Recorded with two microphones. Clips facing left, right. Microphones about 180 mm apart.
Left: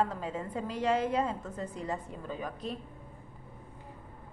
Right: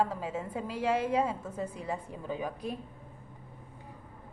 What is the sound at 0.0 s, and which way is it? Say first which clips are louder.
A woman's voice: right 1 dB; 10° right (ahead or behind).